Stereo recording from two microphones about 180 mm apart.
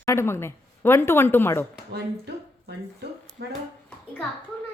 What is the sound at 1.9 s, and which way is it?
Speech, 65° right (ahead or behind).